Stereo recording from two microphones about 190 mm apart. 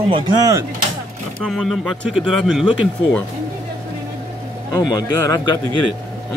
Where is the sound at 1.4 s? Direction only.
Centre (ahead or behind).